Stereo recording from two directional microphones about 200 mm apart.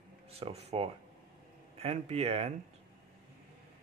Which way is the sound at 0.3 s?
30° right (ahead or behind).